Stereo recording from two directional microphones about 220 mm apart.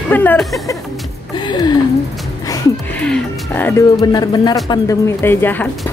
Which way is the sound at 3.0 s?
5° left (ahead or behind).